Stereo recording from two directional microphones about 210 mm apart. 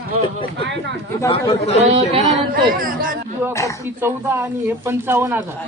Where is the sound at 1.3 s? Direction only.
30° left (ahead or behind).